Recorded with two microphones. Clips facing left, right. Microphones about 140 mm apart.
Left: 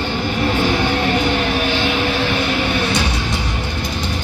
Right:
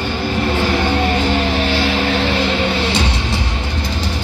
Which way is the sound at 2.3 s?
25° right (ahead or behind).